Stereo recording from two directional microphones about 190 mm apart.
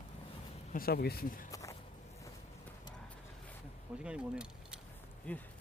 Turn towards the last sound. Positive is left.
turn(degrees=10)  # may be behind; listen again after turning